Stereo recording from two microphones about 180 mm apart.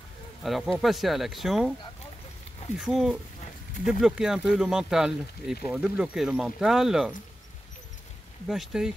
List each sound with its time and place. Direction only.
0.4 s speech: centre (ahead or behind)
2.8 s speech: centre (ahead or behind)
8.5 s speech: centre (ahead or behind)